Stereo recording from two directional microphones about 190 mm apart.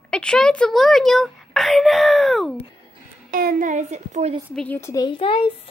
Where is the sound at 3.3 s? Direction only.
50° right (ahead or behind).